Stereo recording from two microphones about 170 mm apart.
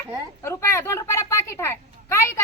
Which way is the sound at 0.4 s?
15° left (ahead or behind).